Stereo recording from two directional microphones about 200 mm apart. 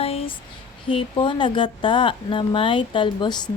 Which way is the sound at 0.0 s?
30° left (ahead or behind).